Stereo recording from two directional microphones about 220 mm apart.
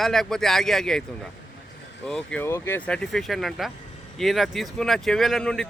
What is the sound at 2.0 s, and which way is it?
Speech, 5° left (ahead or behind).